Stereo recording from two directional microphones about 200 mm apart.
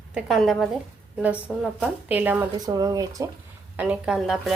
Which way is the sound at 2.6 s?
20° right (ahead or behind).